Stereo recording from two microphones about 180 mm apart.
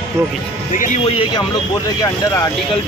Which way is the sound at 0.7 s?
45° left (ahead or behind).